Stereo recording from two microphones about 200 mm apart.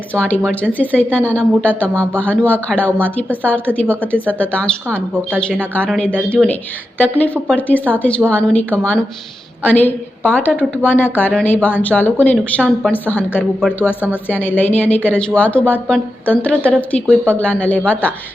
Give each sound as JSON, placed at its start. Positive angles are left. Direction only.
{"t": 0.1, "sound": "a woman's voice", "side_deg": 5}
{"t": 5.7, "sound": "a woman's voice", "side_deg": 5}